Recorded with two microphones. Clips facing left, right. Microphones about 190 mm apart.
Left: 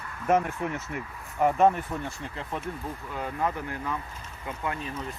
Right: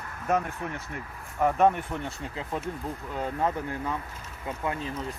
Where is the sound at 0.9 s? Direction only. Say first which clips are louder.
Left 1 dB; 10° left (ahead or behind).